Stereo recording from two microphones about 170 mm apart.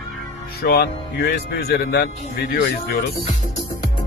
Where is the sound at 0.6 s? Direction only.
65° left (ahead or behind).